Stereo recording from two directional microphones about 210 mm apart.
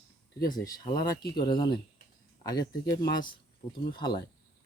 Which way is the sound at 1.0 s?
45° left (ahead or behind).